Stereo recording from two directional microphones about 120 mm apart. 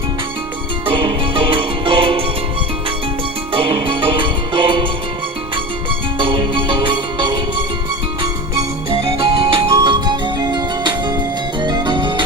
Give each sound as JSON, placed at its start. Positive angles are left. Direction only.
{"t": 0.9, "sound": "music", "side_deg": -45}
{"t": 3.5, "sound": "music", "side_deg": -45}
{"t": 6.1, "sound": "music", "side_deg": -45}
{"t": 8.9, "sound": "music", "side_deg": -45}